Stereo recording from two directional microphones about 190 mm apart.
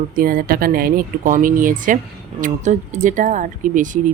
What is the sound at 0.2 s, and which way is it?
Speech, 50° right (ahead or behind).